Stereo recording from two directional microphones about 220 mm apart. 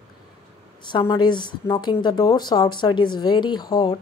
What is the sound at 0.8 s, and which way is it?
A woman's voice, 20° left (ahead or behind).